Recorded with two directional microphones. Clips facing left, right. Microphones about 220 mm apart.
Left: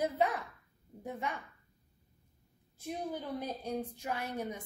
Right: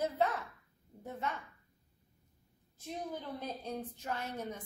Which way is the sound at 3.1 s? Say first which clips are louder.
Left 4 dB; 10° left (ahead or behind).